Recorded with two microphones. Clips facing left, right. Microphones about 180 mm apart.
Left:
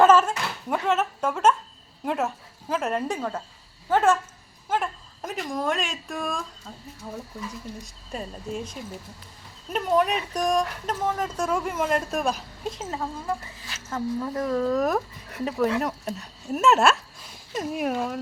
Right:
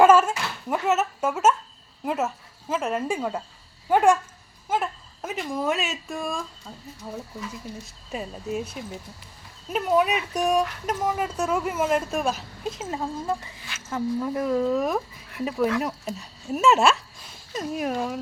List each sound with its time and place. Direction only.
0.0 s a woman's voice: 10° right (ahead or behind)
7.8 s speech: 5° right (ahead or behind)
12.9 s speech: 20° right (ahead or behind)
14.8 s a woman's voice: centre (ahead or behind)